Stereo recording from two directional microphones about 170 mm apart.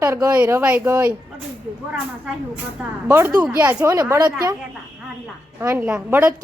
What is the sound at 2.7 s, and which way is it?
A woman's voice, 10° right (ahead or behind).